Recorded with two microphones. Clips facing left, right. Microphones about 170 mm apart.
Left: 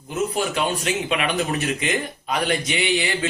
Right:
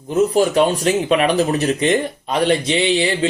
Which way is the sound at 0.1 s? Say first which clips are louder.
Right 9 dB; 35° right (ahead or behind).